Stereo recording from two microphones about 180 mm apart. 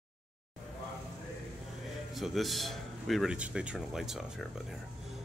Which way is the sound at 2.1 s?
Centre (ahead or behind).